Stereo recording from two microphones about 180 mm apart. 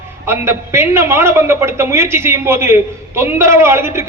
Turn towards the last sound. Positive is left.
turn(degrees=-15)  # may be behind; listen again after turning